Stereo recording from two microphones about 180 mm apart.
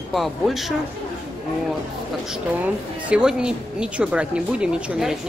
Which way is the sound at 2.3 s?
5° right (ahead or behind).